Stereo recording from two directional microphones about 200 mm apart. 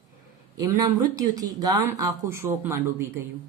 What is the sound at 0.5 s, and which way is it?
Speech, 20° right (ahead or behind).